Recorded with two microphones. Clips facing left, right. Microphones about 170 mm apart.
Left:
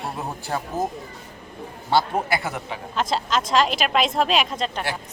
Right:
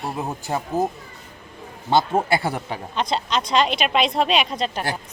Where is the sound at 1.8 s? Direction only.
25° right (ahead or behind).